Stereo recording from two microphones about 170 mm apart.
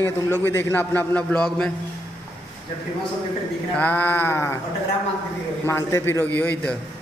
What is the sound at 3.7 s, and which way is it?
Speech, 10° left (ahead or behind).